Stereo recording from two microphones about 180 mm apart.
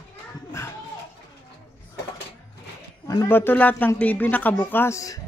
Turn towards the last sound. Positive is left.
turn(degrees=15)  # may be behind; listen again after turning